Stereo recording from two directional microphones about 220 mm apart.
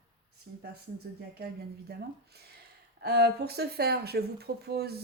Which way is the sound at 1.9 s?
45° right (ahead or behind).